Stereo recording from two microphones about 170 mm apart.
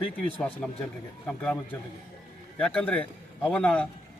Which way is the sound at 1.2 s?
5° left (ahead or behind).